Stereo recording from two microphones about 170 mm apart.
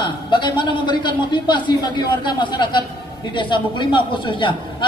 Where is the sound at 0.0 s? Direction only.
30° left (ahead or behind).